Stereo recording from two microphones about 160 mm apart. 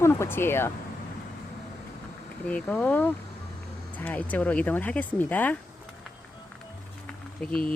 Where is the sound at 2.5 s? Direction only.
10° left (ahead or behind).